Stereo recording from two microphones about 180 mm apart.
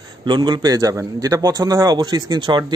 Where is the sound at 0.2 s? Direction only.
25° right (ahead or behind).